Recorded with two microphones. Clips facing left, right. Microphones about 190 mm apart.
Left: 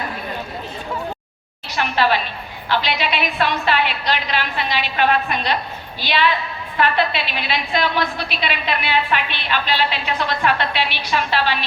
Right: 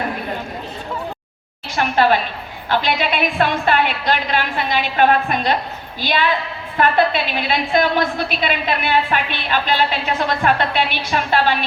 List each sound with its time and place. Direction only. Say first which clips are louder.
1.7 s a woman's voice: right 3 dB; 45° right (ahead or behind)